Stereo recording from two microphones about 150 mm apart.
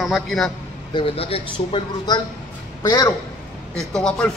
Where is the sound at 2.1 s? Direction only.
25° left (ahead or behind).